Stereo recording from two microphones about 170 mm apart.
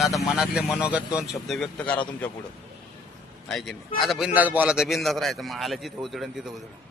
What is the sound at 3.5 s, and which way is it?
A man's voice, centre (ahead or behind).